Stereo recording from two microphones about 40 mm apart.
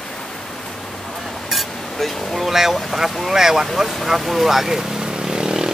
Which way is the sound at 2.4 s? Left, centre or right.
Centre.